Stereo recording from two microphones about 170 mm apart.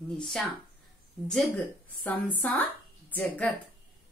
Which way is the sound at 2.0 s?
10° left (ahead or behind).